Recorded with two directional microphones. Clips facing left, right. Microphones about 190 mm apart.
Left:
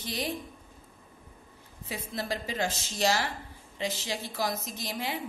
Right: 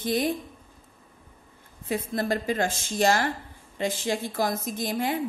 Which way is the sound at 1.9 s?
50° right (ahead or behind).